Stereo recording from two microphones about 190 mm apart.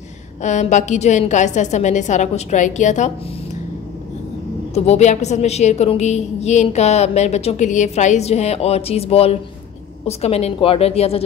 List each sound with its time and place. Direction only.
0.4 s a woman's voice: 40° left (ahead or behind)
4.7 s a woman's voice: 35° left (ahead or behind)